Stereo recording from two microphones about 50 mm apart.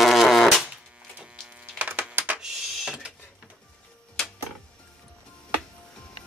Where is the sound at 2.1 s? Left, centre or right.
Right.